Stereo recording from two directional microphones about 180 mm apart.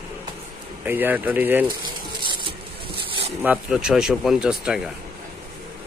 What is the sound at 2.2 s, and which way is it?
Vehicle, 25° right (ahead or behind).